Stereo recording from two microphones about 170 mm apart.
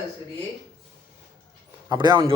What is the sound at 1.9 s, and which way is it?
Speech, 25° right (ahead or behind).